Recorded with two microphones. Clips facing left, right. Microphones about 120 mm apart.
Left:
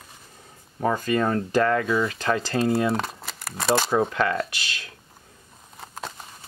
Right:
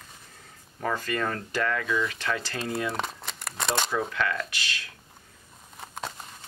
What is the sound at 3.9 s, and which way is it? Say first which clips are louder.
Speech: left 6 dB; 35° left (ahead or behind).